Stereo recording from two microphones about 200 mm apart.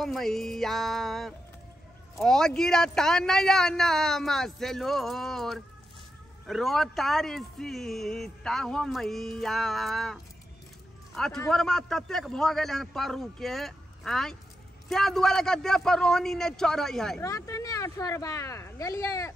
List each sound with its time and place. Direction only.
0.0 s speech: centre (ahead or behind)
17.2 s speech: 15° left (ahead or behind)